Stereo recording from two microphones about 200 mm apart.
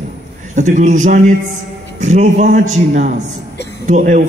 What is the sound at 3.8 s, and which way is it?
Speech, 40° right (ahead or behind).